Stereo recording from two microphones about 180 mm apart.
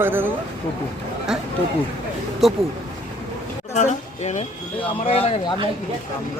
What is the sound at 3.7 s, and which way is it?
A woman's voice, 40° left (ahead or behind).